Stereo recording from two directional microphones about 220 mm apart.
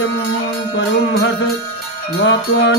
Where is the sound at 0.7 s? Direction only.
45° left (ahead or behind).